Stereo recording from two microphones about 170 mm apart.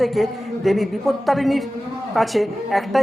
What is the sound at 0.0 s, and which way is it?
A man's voice, centre (ahead or behind).